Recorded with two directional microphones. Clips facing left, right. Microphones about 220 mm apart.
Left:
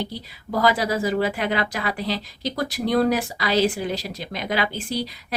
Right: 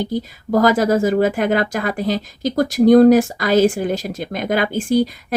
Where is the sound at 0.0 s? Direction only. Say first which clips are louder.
Right 9 dB; 45° right (ahead or behind).